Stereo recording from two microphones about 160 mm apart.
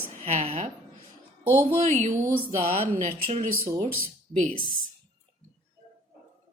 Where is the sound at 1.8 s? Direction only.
45° right (ahead or behind).